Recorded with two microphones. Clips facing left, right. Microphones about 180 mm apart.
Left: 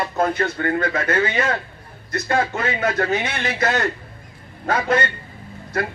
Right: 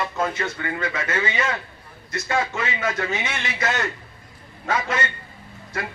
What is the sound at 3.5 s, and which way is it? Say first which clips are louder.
Speech: left 4 dB; 35° left (ahead or behind).